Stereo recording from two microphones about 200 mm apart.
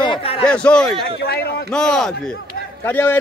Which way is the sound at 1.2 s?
50° left (ahead or behind).